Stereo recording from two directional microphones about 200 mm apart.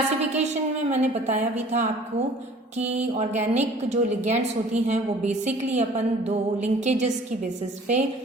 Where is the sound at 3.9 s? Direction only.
35° right (ahead or behind).